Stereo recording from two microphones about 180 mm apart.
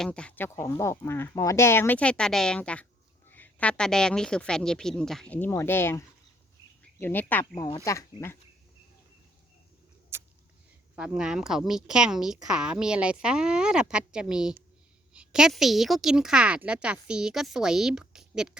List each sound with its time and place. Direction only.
0.0 s a woman's voice: 5° left (ahead or behind)
7.0 s speech: 10° left (ahead or behind)
10.9 s a woman's voice: 5° right (ahead or behind)